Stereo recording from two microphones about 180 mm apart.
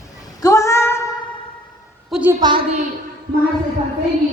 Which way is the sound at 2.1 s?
10° right (ahead or behind).